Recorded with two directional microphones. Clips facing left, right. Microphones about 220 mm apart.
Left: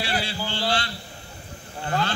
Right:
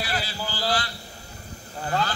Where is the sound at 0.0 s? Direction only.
25° left (ahead or behind).